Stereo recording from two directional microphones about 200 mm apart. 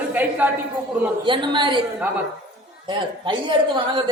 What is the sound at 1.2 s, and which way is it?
Speech, 25° right (ahead or behind).